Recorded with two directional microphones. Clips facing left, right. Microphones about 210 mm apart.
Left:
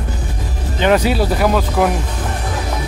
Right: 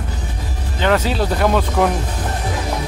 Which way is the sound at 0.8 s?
15° left (ahead or behind).